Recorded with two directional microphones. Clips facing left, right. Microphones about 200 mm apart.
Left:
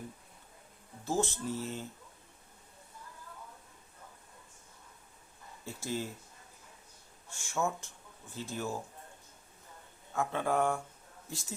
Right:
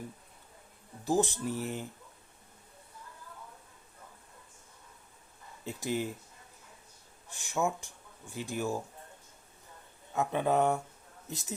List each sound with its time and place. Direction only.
1.0 s speech: 15° right (ahead or behind)
5.6 s speech: 15° right (ahead or behind)
7.3 s speech: 15° right (ahead or behind)
10.1 s speech: 20° right (ahead or behind)